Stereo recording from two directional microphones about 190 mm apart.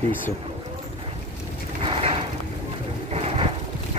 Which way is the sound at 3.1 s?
30° right (ahead or behind).